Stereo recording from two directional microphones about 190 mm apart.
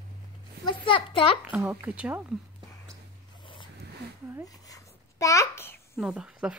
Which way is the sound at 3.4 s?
25° left (ahead or behind).